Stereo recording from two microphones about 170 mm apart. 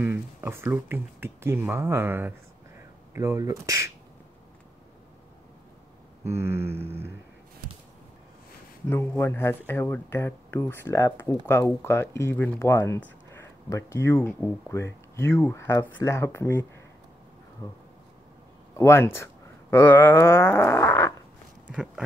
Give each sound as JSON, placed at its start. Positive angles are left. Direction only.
{"t": 0.0, "sound": "speech", "side_deg": -15}
{"t": 6.2, "sound": "speech", "side_deg": -15}
{"t": 8.8, "sound": "speech", "side_deg": 10}
{"t": 21.6, "sound": "speech", "side_deg": -5}